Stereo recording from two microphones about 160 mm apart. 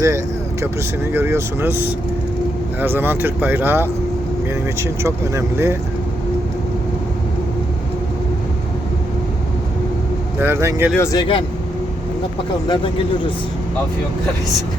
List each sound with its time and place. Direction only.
1.1 s speech: 15° right (ahead or behind)
10.4 s speech: 15° right (ahead or behind)
10.9 s speech: 20° left (ahead or behind)
12.6 s speech: 25° left (ahead or behind)